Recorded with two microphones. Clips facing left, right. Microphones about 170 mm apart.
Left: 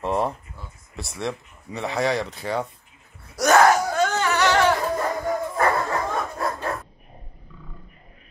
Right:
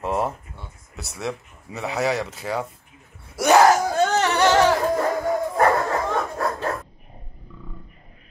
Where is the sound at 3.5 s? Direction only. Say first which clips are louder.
Right 1 dB; 30° right (ahead or behind).